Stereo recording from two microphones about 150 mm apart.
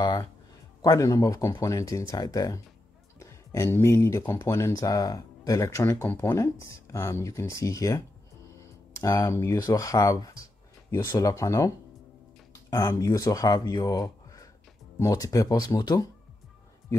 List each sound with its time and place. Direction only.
0.0 s speech: 25° left (ahead or behind)
9.0 s speech: 20° left (ahead or behind)